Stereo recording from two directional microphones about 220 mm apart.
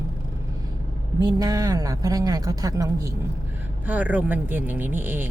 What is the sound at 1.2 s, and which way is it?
Speech, 15° right (ahead or behind).